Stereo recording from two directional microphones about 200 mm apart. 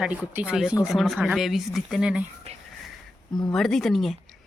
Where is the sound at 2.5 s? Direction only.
30° right (ahead or behind).